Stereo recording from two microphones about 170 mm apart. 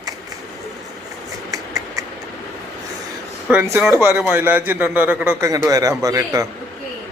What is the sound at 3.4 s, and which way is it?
A man's voice, 15° right (ahead or behind).